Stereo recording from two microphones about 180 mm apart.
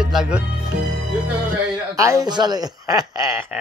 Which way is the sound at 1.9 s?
15° right (ahead or behind).